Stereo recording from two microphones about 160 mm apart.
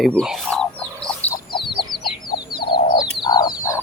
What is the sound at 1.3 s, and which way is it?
Chicken, 30° left (ahead or behind).